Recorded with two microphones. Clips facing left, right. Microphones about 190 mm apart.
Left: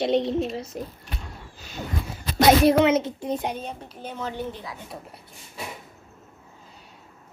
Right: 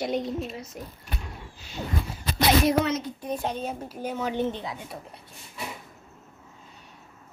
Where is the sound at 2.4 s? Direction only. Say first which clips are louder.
Left 5 dB; 60° left (ahead or behind).